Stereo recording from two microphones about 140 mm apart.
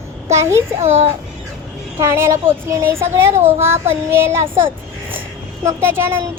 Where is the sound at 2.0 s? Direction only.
20° right (ahead or behind).